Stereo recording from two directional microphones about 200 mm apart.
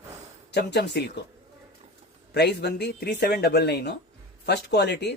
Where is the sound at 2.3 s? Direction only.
55° left (ahead or behind).